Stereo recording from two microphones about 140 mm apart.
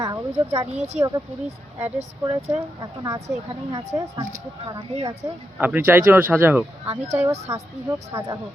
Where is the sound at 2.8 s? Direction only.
25° right (ahead or behind).